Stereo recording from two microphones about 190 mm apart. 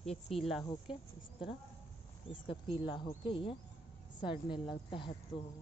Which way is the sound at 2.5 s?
30° left (ahead or behind).